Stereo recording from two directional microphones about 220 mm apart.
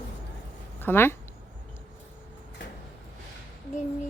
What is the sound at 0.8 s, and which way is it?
Speech, 10° left (ahead or behind).